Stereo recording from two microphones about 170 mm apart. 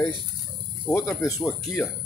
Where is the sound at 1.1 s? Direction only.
15° left (ahead or behind).